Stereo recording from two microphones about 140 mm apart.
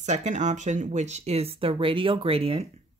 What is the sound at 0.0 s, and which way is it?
Speech, 55° right (ahead or behind).